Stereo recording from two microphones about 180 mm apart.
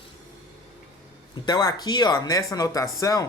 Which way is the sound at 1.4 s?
20° left (ahead or behind).